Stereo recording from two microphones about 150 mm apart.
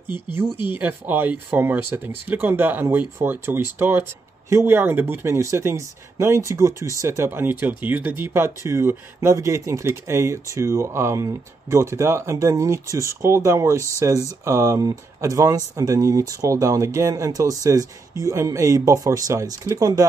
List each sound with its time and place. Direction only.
0.1 s speech: 15° right (ahead or behind)